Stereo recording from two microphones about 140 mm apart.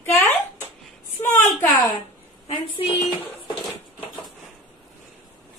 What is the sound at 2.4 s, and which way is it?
Speech, 45° left (ahead or behind).